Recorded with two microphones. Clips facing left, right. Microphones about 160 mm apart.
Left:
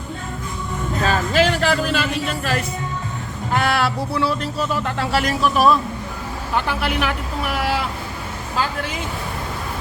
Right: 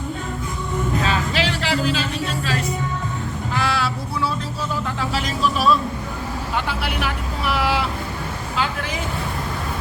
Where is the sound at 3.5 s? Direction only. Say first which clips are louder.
Left 4 dB; 60° left (ahead or behind).